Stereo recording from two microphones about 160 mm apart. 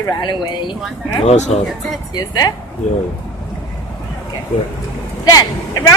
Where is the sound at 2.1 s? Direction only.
25° left (ahead or behind).